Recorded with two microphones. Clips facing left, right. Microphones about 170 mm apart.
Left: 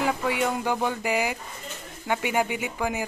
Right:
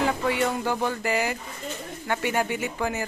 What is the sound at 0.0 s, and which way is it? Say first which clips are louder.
Speech: right 1 dB; 10° left (ahead or behind).